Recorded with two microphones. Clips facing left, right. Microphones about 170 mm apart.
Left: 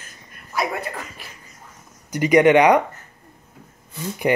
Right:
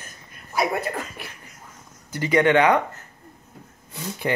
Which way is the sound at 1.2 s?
60° right (ahead or behind).